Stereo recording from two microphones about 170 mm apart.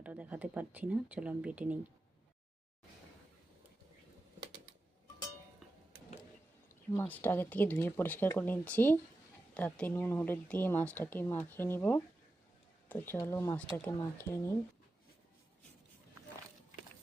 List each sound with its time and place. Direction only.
0.0 s speech: 10° right (ahead or behind)
6.9 s speech: 10° left (ahead or behind)